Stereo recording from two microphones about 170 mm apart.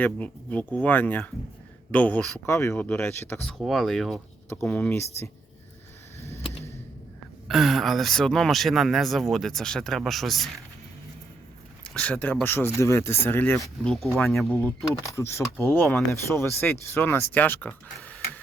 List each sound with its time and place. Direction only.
0.0 s speech: 10° left (ahead or behind)
2.5 s speech: 15° left (ahead or behind)
3.4 s speech: centre (ahead or behind)
4.4 s speech: 15° left (ahead or behind)
6.1 s vehicle: 15° left (ahead or behind)
7.4 s speech: centre (ahead or behind)
11.8 s speech: 5° left (ahead or behind)
15.0 s speech: 15° left (ahead or behind)